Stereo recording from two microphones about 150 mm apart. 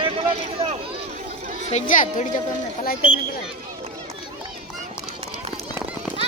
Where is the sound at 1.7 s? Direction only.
60° left (ahead or behind).